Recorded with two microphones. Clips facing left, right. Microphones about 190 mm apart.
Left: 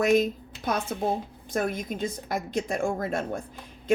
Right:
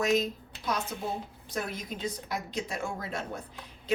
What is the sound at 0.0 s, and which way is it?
A woman's voice, 55° left (ahead or behind).